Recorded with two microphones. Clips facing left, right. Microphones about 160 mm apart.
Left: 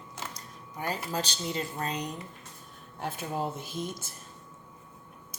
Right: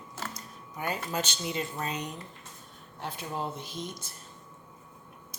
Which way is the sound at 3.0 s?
45° left (ahead or behind).